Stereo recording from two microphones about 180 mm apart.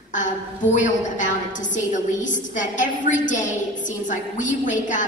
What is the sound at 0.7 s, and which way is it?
A woman's voice, 45° left (ahead or behind).